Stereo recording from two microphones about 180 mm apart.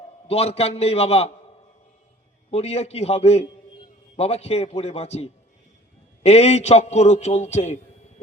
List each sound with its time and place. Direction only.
0.3 s a man's voice: 35° left (ahead or behind)
2.5 s a man's voice: 35° left (ahead or behind)